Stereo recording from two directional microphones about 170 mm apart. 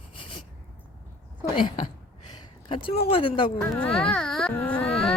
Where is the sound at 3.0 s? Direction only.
30° left (ahead or behind).